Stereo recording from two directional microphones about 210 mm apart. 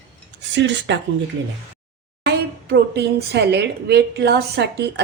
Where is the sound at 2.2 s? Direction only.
50° right (ahead or behind).